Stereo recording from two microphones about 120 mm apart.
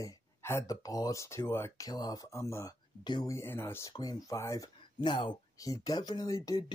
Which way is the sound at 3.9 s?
35° left (ahead or behind).